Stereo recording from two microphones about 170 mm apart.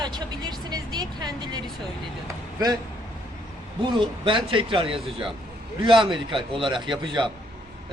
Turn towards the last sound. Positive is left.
turn(degrees=-30)  # may be behind; listen again after turning